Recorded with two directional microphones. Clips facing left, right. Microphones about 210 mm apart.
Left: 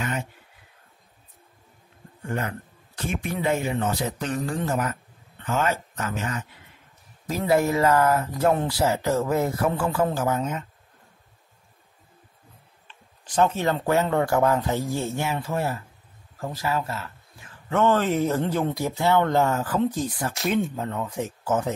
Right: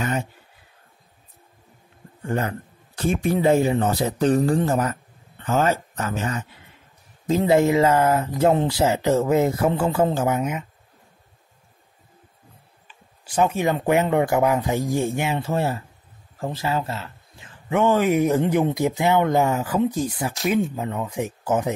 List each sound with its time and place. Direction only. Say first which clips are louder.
2.2 s a man's voice: right 4 dB; 35° right (ahead or behind); by 10.7 s 10° right (ahead or behind)
12.8 s speech: even; 10° right (ahead or behind)